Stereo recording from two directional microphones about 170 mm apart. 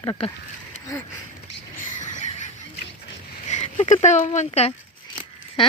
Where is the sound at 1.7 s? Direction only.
50° left (ahead or behind).